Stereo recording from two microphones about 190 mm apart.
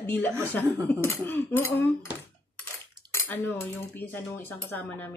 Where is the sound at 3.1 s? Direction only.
10° left (ahead or behind).